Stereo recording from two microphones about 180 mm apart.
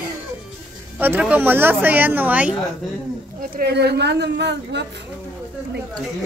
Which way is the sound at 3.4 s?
60° right (ahead or behind).